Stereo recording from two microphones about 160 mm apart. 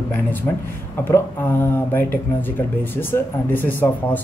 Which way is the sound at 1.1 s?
15° left (ahead or behind).